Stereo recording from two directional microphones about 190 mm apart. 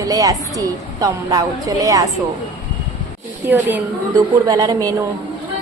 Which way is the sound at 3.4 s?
10° right (ahead or behind).